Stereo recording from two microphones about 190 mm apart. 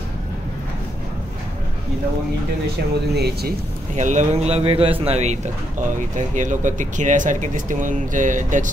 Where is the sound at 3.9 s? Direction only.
40° right (ahead or behind).